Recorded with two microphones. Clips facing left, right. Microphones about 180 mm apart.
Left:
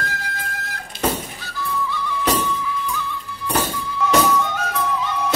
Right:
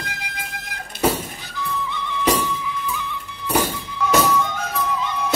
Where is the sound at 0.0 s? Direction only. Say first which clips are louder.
Left 4 dB; 15° right (ahead or behind).